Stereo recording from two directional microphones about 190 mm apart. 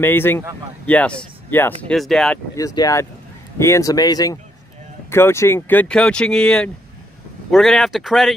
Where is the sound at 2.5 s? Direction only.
20° left (ahead or behind).